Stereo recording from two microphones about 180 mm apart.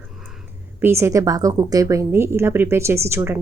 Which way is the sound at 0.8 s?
15° right (ahead or behind).